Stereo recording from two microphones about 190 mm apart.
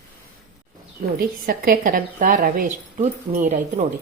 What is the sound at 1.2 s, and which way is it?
A woman's voice, 50° right (ahead or behind).